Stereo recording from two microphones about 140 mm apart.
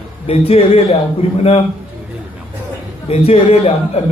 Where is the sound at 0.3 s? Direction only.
45° left (ahead or behind).